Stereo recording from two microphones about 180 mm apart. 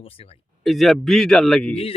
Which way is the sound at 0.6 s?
Centre (ahead or behind).